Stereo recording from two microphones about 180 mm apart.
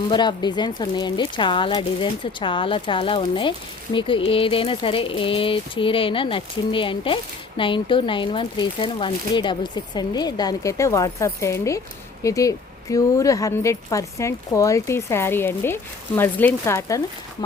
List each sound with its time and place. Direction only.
0.1 s a woman's voice: 25° left (ahead or behind)